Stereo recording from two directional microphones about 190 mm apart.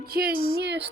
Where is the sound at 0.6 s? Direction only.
60° right (ahead or behind).